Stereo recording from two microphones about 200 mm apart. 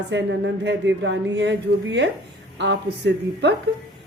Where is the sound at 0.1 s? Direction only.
60° right (ahead or behind).